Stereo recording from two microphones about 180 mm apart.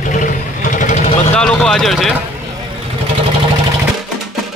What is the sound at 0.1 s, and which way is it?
Vehicle, 45° left (ahead or behind).